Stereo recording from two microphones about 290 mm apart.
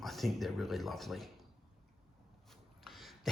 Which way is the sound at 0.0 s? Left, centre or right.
Centre.